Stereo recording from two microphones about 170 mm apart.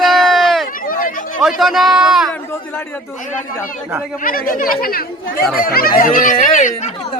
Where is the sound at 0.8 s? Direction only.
55° left (ahead or behind).